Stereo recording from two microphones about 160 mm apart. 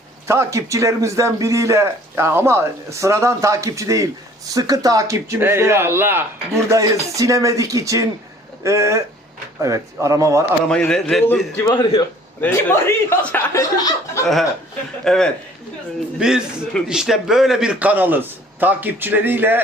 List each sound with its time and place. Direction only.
0.3 s a man's voice: 15° right (ahead or behind)
10.7 s a man's voice: 5° left (ahead or behind)
11.6 s a man's voice: 25° left (ahead or behind)
12.4 s speech: 15° left (ahead or behind)
15.0 s a man's voice: 5° left (ahead or behind); by 19.6 s 10° right (ahead or behind)